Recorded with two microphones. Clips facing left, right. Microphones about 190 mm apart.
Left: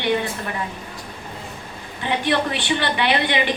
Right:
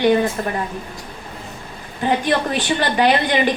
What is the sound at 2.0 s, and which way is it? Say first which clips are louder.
A woman's voice: right 3 dB; 40° right (ahead or behind).